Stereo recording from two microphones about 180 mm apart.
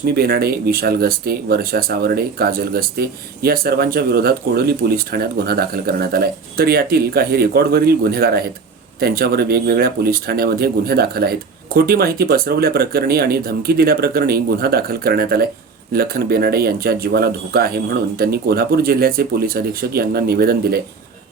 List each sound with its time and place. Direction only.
0.2 s speech: 60° right (ahead or behind)